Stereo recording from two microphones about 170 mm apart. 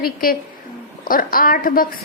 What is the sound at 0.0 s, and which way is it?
A woman's voice, 60° left (ahead or behind).